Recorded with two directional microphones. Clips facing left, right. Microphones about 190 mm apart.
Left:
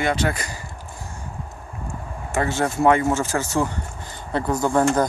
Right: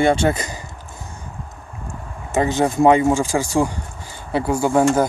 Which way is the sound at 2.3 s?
15° right (ahead or behind).